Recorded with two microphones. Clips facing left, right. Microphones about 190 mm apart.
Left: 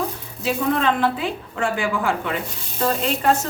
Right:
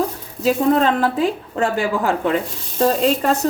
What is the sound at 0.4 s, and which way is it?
Sizzle, 40° right (ahead or behind).